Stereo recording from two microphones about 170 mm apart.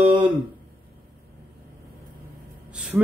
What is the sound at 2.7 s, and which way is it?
Gasp, 5° right (ahead or behind).